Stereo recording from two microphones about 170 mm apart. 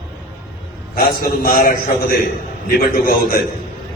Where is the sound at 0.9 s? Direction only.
60° left (ahead or behind).